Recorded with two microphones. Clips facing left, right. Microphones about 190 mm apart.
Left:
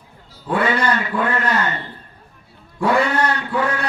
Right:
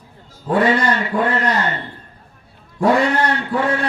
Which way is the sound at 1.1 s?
40° right (ahead or behind).